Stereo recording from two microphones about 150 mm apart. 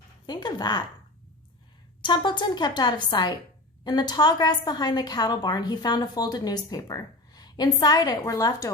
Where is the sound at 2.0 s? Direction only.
30° left (ahead or behind).